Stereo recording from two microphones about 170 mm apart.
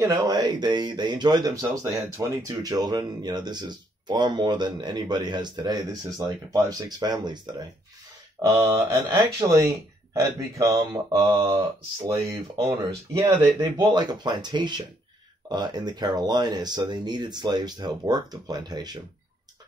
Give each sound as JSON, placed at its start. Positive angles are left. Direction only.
{"t": 0.0, "sound": "speech", "side_deg": -20}